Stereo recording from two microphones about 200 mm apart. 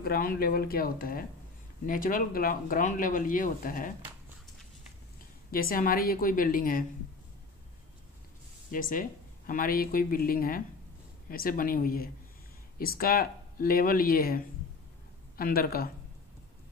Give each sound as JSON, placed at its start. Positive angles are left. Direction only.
{"t": 0.0, "sound": "speech", "side_deg": 45}
{"t": 5.5, "sound": "speech", "side_deg": 45}
{"t": 8.7, "sound": "speech", "side_deg": 40}